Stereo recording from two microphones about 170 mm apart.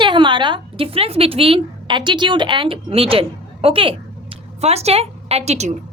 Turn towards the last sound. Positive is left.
turn(degrees=-40)  # may be behind; listen again after turning